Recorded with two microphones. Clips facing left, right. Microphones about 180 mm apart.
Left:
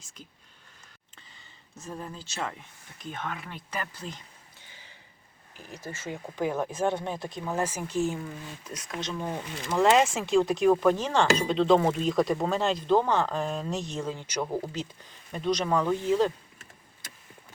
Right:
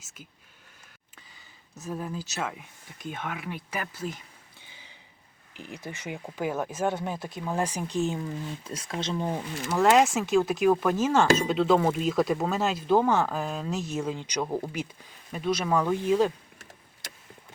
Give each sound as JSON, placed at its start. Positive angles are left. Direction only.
{"t": 1.8, "sound": "speech", "side_deg": -5}
{"t": 4.6, "sound": "a sound", "side_deg": -15}
{"t": 5.5, "sound": "speech", "side_deg": -15}
{"t": 7.4, "sound": "speech", "side_deg": -15}
{"t": 9.6, "sound": "speech", "side_deg": 0}
{"t": 14.1, "sound": "speech", "side_deg": -15}